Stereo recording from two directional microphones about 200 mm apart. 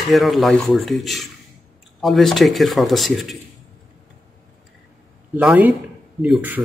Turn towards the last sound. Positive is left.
turn(degrees=-5)  # may be behind; listen again after turning